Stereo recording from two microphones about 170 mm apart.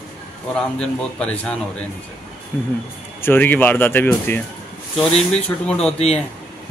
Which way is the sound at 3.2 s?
10° left (ahead or behind).